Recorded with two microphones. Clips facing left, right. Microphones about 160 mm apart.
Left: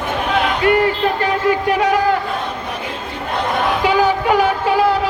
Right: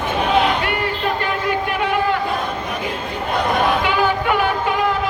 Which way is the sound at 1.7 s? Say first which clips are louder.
Left 4 dB; 40° left (ahead or behind).